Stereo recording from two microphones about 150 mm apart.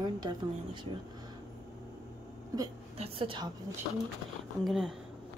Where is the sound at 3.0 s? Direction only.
35° right (ahead or behind).